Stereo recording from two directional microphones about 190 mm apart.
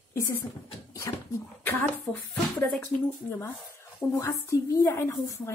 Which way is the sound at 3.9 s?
15° left (ahead or behind).